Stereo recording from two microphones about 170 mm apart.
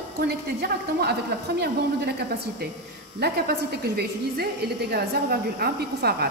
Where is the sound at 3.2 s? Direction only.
70° right (ahead or behind).